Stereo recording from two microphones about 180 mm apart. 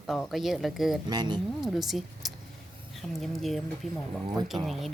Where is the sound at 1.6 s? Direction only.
Centre (ahead or behind).